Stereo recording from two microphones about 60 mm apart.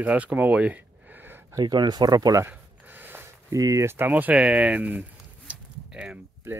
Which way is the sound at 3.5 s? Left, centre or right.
Right.